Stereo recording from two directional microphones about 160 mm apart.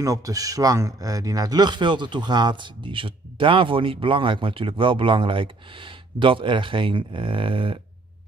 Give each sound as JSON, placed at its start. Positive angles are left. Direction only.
{"t": 0.0, "sound": "speech", "side_deg": -20}